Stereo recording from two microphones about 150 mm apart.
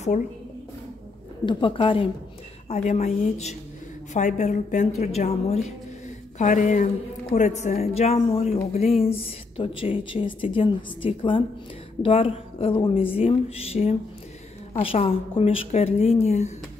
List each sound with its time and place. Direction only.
1.4 s a woman's voice: 35° left (ahead or behind)
2.7 s a woman's voice: 45° left (ahead or behind)
6.3 s a woman's voice: 55° left (ahead or behind)